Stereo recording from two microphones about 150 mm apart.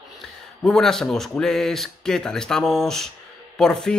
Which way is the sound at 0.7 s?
5° left (ahead or behind).